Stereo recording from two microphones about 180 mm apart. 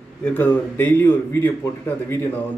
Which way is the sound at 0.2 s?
10° left (ahead or behind).